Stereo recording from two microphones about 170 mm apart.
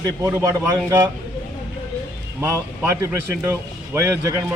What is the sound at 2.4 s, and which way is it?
A man's voice, 15° right (ahead or behind).